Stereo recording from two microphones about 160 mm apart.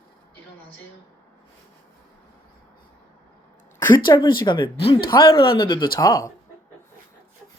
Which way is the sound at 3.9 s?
30° left (ahead or behind).